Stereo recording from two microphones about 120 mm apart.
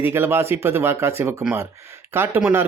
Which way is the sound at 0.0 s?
20° right (ahead or behind).